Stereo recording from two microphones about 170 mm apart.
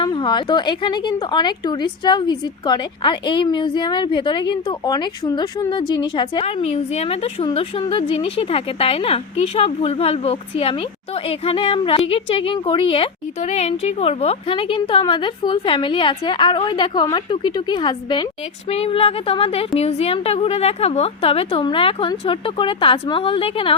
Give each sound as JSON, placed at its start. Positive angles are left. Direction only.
{"t": 0.0, "sound": "speech", "side_deg": 25}
{"t": 6.4, "sound": "a woman's voice", "side_deg": 35}